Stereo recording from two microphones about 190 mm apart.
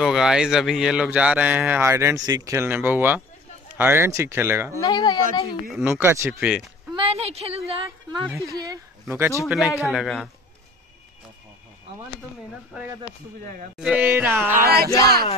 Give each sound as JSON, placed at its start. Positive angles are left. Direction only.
{"t": 0.0, "sound": "speech", "side_deg": -5}
{"t": 4.7, "sound": "speech", "side_deg": 20}
{"t": 5.7, "sound": "speech", "side_deg": -5}
{"t": 6.5, "sound": "a sound", "side_deg": 0}
{"t": 7.0, "sound": "a woman's voice", "side_deg": -30}
{"t": 9.1, "sound": "speech", "side_deg": -15}
{"t": 13.7, "sound": "speech", "side_deg": -5}
{"t": 14.6, "sound": "speech", "side_deg": -55}